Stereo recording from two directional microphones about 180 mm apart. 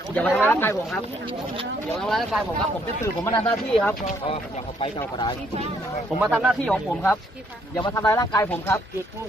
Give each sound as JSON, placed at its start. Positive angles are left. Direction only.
{"t": 0.1, "sound": "speech", "side_deg": 10}
{"t": 2.0, "sound": "speech", "side_deg": 0}
{"t": 4.3, "sound": "speech", "side_deg": 30}
{"t": 6.2, "sound": "speech", "side_deg": -5}
{"t": 7.7, "sound": "speech", "side_deg": 20}